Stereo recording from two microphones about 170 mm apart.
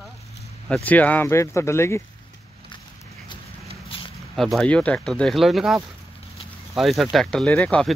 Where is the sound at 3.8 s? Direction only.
30° left (ahead or behind).